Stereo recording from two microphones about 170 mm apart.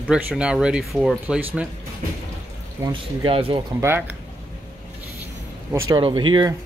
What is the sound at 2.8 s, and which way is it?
Speech, 25° right (ahead or behind).